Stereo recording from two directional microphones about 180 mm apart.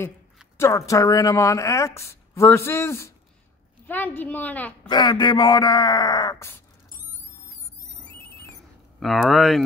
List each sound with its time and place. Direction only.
0.6 s speech: 15° left (ahead or behind)
4.8 s speech: 25° left (ahead or behind)
9.0 s speech: centre (ahead or behind)